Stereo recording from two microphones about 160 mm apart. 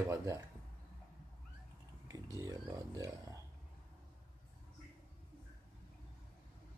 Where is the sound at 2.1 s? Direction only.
20° right (ahead or behind).